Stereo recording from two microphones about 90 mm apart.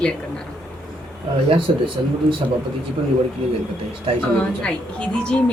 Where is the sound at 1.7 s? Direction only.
90° right.